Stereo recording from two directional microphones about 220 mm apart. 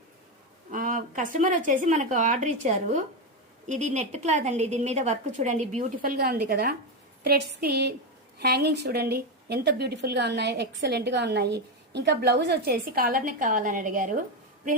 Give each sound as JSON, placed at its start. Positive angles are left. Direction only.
{"t": 0.7, "sound": "a woman's voice", "side_deg": -35}